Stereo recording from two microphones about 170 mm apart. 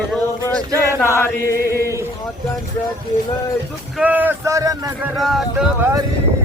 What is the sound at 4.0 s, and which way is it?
Speech, 10° right (ahead or behind).